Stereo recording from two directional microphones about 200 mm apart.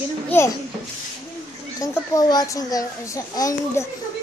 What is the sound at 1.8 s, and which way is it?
A child's voice, 20° left (ahead or behind).